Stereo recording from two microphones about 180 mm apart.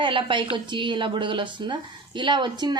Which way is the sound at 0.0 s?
30° right (ahead or behind).